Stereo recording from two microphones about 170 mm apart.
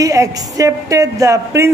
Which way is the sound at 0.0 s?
20° right (ahead or behind).